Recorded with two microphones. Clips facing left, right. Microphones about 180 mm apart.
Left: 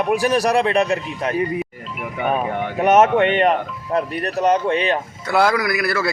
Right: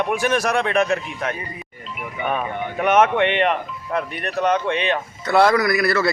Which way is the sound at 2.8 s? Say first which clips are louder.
Left 3 dB; 40° left (ahead or behind).